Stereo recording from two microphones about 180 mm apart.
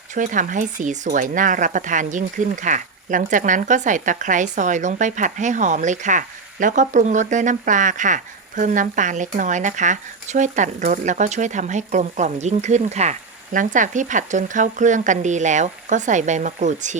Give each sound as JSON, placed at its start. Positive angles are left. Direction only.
{"t": 0.1, "sound": "speech", "side_deg": -45}